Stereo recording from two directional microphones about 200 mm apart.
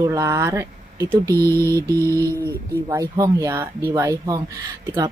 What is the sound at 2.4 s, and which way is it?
Speech, 15° right (ahead or behind).